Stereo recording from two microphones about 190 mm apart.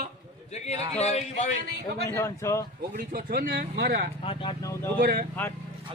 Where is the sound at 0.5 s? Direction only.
35° left (ahead or behind).